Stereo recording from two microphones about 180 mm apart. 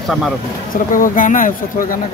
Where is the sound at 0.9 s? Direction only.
50° left (ahead or behind).